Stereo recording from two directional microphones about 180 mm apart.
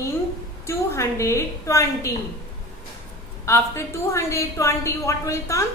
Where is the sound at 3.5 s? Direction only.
15° left (ahead or behind).